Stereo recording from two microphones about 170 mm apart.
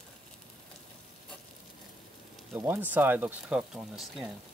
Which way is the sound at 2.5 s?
15° right (ahead or behind).